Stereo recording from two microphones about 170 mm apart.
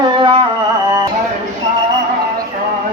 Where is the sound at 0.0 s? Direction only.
25° right (ahead or behind).